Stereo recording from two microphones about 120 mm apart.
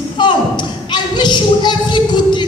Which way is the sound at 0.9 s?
40° left (ahead or behind).